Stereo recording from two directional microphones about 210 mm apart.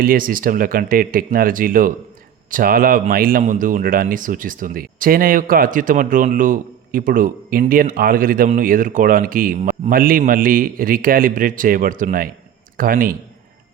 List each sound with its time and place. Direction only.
0.0 s a man's voice: 40° right (ahead or behind)